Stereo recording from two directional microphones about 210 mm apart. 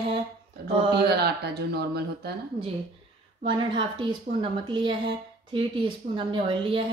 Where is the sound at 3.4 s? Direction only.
20° right (ahead or behind).